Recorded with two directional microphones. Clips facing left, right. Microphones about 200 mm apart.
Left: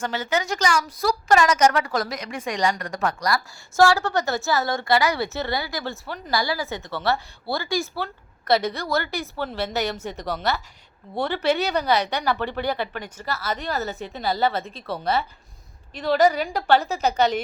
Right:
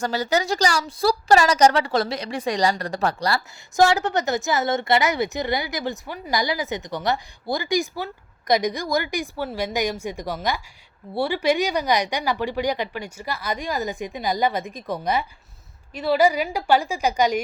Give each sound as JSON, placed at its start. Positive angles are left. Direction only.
{"t": 0.0, "sound": "a woman's voice", "side_deg": -35}
{"t": 3.8, "sound": "speech", "side_deg": -20}